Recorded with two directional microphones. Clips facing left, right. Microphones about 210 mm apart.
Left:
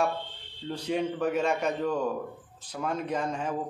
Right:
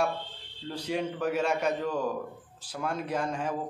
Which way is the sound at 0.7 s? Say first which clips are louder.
Left 2 dB; 5° right (ahead or behind).